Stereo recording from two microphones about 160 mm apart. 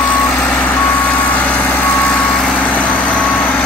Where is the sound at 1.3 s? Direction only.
10° left (ahead or behind).